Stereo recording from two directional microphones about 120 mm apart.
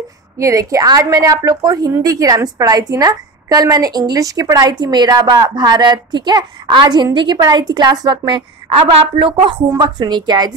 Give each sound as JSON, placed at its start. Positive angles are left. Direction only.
{"t": 0.4, "sound": "a woman's voice", "side_deg": -25}